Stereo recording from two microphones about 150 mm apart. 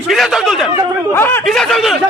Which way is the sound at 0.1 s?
Centre (ahead or behind).